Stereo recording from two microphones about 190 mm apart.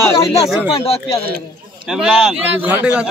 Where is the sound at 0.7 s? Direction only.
30° left (ahead or behind).